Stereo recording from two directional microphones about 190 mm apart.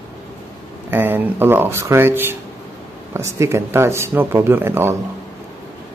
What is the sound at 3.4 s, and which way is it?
Speech, 15° right (ahead or behind).